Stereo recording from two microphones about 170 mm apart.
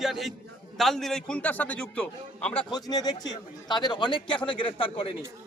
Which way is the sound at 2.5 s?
25° left (ahead or behind).